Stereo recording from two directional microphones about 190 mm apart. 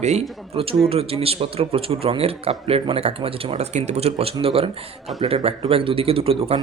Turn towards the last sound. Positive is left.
turn(degrees=-30)  # may be behind; listen again after turning